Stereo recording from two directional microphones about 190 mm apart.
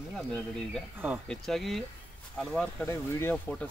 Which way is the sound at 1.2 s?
Centre (ahead or behind).